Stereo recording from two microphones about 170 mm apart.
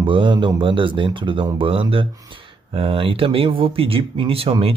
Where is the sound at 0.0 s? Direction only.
30° right (ahead or behind).